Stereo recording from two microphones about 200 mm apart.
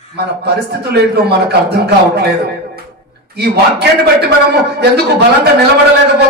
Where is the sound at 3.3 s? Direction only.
55° right (ahead or behind).